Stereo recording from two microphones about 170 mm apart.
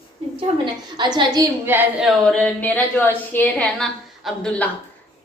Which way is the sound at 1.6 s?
10° right (ahead or behind).